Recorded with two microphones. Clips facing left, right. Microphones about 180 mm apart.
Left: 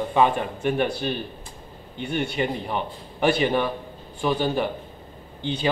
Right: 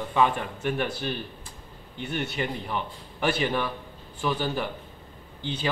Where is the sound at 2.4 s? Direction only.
25° left (ahead or behind).